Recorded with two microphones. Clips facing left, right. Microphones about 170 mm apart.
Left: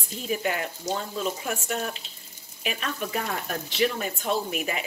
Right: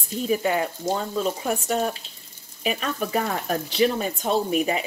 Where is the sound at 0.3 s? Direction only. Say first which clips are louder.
Right 5 dB; 35° right (ahead or behind).